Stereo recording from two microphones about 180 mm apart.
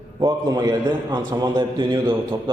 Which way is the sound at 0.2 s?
25° right (ahead or behind).